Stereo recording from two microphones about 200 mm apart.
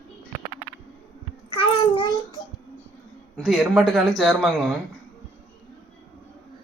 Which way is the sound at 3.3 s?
Centre (ahead or behind).